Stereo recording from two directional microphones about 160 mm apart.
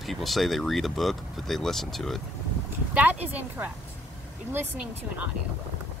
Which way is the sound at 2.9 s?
10° right (ahead or behind).